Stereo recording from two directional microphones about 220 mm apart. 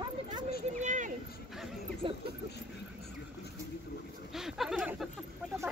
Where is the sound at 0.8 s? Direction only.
35° right (ahead or behind).